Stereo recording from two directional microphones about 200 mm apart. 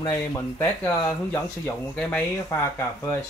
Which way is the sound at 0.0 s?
15° left (ahead or behind).